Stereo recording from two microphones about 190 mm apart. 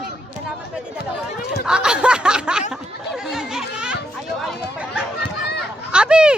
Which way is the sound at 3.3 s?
5° right (ahead or behind).